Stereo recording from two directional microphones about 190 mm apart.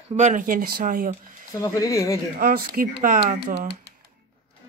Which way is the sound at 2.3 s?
50° right (ahead or behind).